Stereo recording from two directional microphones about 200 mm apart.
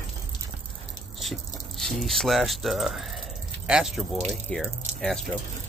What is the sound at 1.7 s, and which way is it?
Speech, centre (ahead or behind).